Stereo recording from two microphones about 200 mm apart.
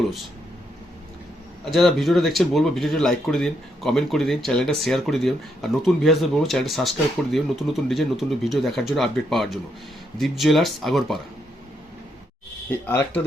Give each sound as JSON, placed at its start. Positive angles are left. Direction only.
{"t": 1.7, "sound": "speech", "side_deg": 0}